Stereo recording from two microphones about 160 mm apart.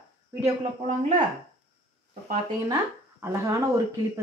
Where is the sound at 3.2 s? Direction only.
20° right (ahead or behind).